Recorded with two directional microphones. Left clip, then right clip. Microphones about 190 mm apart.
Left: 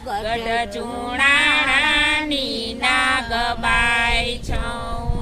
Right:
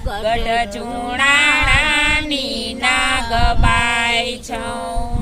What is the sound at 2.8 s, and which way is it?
Child singing, 20° right (ahead or behind).